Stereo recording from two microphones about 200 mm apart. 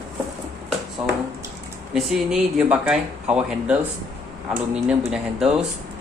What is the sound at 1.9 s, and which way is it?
Speech, centre (ahead or behind).